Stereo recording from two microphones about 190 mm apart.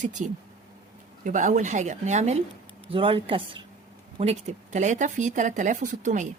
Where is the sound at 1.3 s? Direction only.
40° right (ahead or behind).